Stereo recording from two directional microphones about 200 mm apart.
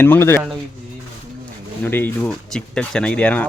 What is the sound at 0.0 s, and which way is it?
Speech, 10° left (ahead or behind).